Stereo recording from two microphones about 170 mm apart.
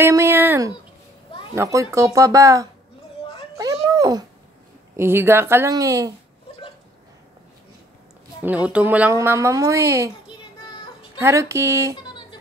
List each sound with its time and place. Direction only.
0.0 s a sound: 15° right (ahead or behind)
1.5 s speech: 15° right (ahead or behind)
3.5 s a sound: 20° right (ahead or behind)
4.9 s a woman's voice: 15° right (ahead or behind)
8.4 s a woman's voice: 10° right (ahead or behind)
11.1 s a woman's voice: 15° right (ahead or behind)
12.0 s music: 25° left (ahead or behind)